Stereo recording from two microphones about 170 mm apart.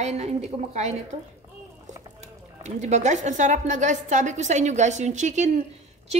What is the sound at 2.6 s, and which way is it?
A woman's voice, 40° right (ahead or behind).